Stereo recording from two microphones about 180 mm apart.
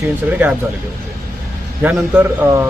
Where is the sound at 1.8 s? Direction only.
10° right (ahead or behind).